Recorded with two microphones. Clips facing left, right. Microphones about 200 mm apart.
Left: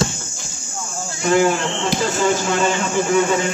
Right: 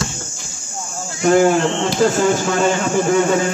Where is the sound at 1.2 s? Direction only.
45° right (ahead or behind).